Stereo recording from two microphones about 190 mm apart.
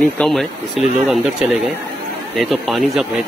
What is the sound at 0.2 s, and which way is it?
Speech, centre (ahead or behind).